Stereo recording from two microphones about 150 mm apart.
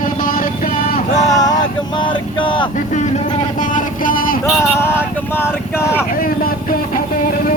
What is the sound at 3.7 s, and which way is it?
Speech, 65° left (ahead or behind).